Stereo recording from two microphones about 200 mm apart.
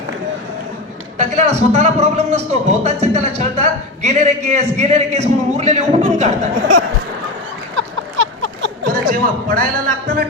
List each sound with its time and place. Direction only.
1.2 s speech: 35° right (ahead or behind)
7.8 s a sound: 70° right (ahead or behind)
8.9 s a man's voice: 45° right (ahead or behind)